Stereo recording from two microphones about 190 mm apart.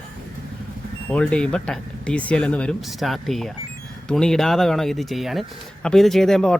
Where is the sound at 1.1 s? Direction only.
5° left (ahead or behind).